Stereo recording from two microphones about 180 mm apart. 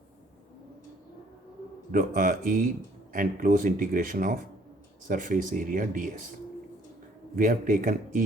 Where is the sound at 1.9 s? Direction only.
50° right (ahead or behind).